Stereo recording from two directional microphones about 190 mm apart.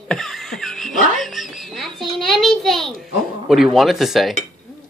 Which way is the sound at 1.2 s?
Centre (ahead or behind).